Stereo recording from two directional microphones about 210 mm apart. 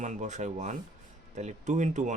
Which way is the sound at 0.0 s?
35° right (ahead or behind).